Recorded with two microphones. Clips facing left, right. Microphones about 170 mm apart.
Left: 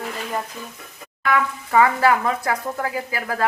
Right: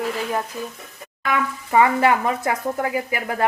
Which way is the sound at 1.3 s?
20° right (ahead or behind).